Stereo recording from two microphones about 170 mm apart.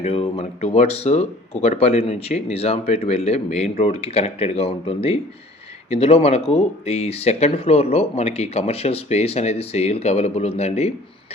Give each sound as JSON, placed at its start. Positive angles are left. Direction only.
{"t": 0.0, "sound": "speech", "side_deg": 35}